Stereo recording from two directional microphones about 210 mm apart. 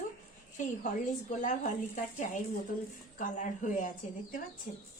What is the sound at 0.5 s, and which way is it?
Speech, 35° left (ahead or behind).